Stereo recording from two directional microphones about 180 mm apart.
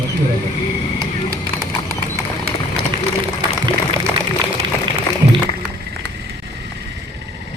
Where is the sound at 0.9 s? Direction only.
20° right (ahead or behind).